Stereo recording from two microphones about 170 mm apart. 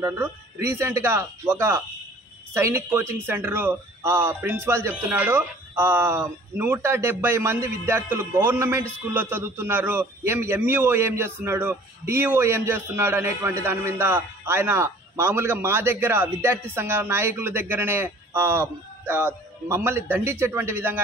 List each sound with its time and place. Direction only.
0.0 s a man's voice: 15° right (ahead or behind)